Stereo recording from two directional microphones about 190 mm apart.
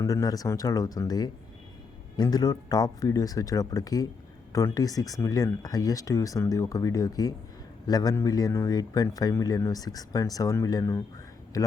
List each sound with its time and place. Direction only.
0.0 s speech: 20° left (ahead or behind)